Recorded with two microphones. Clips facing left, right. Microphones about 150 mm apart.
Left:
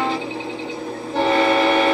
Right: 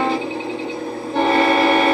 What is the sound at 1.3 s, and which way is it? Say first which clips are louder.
Train: right 1 dB; 50° right (ahead or behind).